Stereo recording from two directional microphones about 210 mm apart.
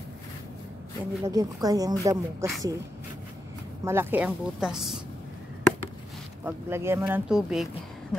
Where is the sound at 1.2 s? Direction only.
15° right (ahead or behind).